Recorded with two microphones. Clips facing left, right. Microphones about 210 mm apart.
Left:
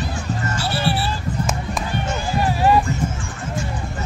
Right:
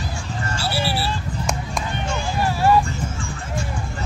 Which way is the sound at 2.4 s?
15° left (ahead or behind).